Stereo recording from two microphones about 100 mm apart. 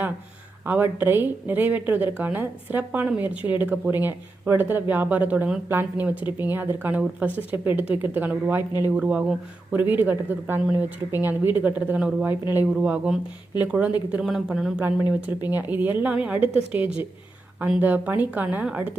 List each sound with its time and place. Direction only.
0.6 s speech: 20° right (ahead or behind)
12.7 s speech: 10° right (ahead or behind)
15.4 s speech: 20° right (ahead or behind)